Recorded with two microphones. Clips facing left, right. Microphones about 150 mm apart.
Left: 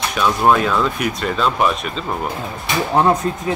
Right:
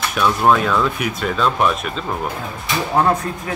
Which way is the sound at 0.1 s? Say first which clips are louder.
Even; centre (ahead or behind).